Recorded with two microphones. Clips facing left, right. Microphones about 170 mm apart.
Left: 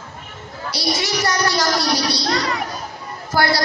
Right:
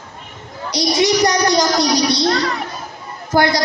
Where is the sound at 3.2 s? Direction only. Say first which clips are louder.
Right 4 dB; 20° right (ahead or behind).